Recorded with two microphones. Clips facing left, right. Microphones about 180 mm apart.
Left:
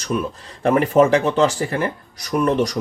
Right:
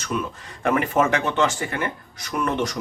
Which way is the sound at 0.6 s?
35° left (ahead or behind).